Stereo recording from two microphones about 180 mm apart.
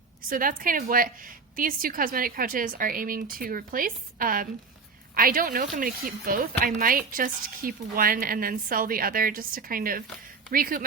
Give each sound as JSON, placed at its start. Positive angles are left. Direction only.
{"t": 0.3, "sound": "a woman's voice", "side_deg": -50}